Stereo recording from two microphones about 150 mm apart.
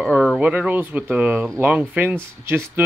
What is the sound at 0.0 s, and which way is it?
Speech, centre (ahead or behind).